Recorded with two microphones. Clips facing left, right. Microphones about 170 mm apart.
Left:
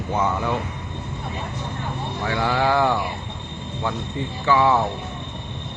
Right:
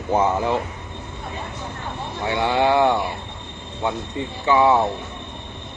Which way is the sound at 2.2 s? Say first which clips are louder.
Right 2 dB; 20° right (ahead or behind).